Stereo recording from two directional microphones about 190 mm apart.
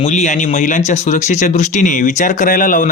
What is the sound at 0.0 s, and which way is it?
Speech, 35° left (ahead or behind).